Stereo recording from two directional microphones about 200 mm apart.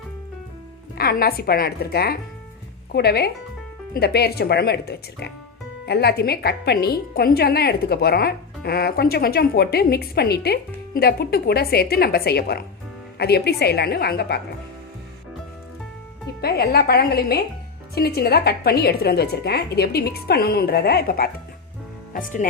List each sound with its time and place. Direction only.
0.9 s a woman's voice: 50° left (ahead or behind)
16.4 s a woman's voice: 50° left (ahead or behind)
22.1 s speech: 40° left (ahead or behind)